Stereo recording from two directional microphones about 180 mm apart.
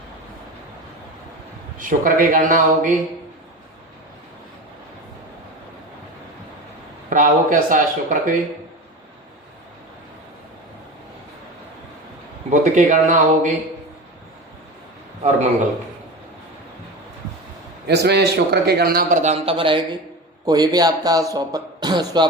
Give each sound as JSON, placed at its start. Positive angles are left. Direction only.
{"t": 1.8, "sound": "speech", "side_deg": -50}
{"t": 7.1, "sound": "speech", "side_deg": -50}
{"t": 12.5, "sound": "speech", "side_deg": -45}
{"t": 17.8, "sound": "a man's voice", "side_deg": -65}
{"t": 19.2, "sound": "speech", "side_deg": -35}